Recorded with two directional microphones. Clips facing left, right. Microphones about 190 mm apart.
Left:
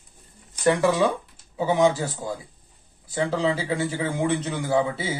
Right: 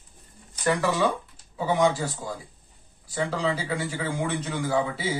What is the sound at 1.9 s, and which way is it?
Speech, 20° left (ahead or behind).